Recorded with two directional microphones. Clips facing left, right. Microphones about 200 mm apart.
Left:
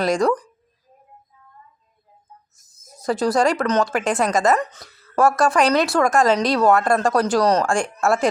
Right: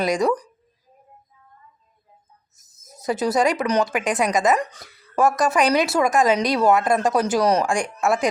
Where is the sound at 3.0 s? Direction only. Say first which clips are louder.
Left 1 dB; centre (ahead or behind).